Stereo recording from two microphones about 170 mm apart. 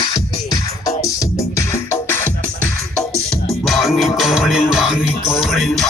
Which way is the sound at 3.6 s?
Centre (ahead or behind).